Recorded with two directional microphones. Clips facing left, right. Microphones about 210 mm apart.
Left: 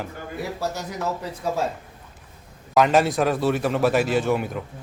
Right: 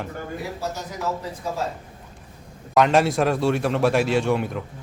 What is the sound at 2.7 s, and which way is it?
A man's voice, centre (ahead or behind).